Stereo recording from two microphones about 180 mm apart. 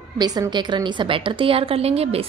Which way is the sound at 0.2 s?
20° right (ahead or behind).